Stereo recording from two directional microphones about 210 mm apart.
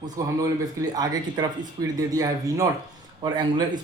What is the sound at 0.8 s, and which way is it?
Speech, 20° right (ahead or behind).